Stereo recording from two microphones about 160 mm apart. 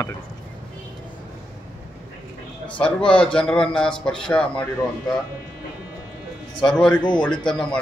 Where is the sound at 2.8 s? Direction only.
5° left (ahead or behind).